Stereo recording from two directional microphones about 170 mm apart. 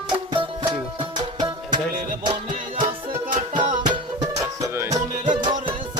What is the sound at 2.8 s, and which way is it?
Music, 50° right (ahead or behind).